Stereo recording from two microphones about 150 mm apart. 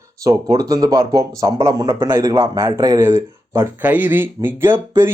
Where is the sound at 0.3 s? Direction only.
25° right (ahead or behind).